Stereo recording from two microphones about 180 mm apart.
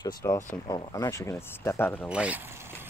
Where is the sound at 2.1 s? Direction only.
5° right (ahead or behind).